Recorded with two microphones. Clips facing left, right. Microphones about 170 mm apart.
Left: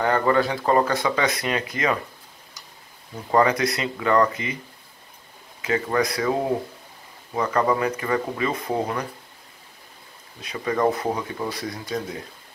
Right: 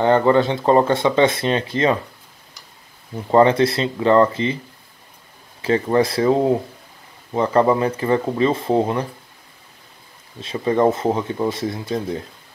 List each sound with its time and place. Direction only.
0.0 s speech: 25° right (ahead or behind)
3.3 s speech: 25° right (ahead or behind)
5.6 s speech: 30° right (ahead or behind)
7.3 s speech: 30° right (ahead or behind)
10.4 s speech: 25° right (ahead or behind)